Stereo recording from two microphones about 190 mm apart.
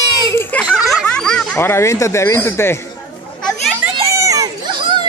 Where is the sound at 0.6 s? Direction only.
Centre (ahead or behind).